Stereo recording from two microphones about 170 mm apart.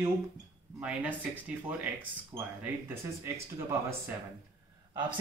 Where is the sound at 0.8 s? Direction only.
5° right (ahead or behind).